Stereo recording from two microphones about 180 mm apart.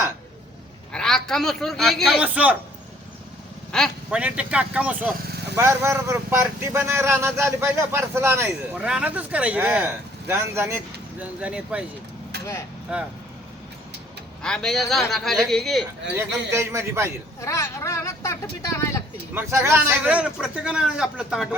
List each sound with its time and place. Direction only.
0.9 s a man's voice: 5° left (ahead or behind)
3.7 s a man's voice: 5° left (ahead or behind)
12.9 s a man's voice: 5° right (ahead or behind)
14.4 s a man's voice: 5° left (ahead or behind)
16.1 s speech: 15° right (ahead or behind)
17.4 s speech: 15° left (ahead or behind)
19.3 s a man's voice: 15° right (ahead or behind)